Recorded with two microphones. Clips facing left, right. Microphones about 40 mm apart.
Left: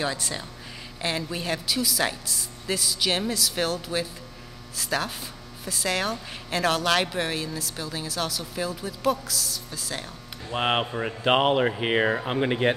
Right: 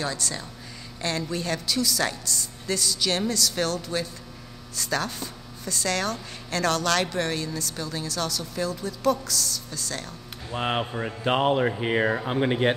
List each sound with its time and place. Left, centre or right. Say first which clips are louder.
0.0 s speech: left 1 dB; centre
10.5 s speech: left 2 dB; left
10.9 s speech: left 1 dB; centre
11.2 s speech: left 1 dB; left
12.1 s speech: even; centre